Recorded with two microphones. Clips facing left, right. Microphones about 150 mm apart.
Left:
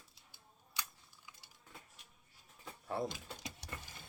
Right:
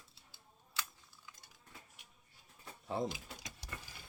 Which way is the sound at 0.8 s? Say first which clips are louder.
Right 2 dB; 15° left (ahead or behind).